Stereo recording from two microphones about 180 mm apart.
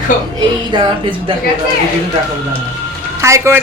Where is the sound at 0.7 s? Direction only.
25° right (ahead or behind).